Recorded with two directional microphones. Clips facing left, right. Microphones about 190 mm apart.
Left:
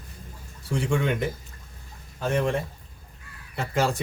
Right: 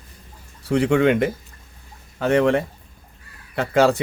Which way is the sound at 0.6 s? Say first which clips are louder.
Right 9 dB; 70° right (ahead or behind).